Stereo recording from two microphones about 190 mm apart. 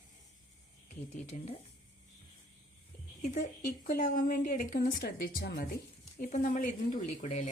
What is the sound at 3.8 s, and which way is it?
Speech, 45° left (ahead or behind).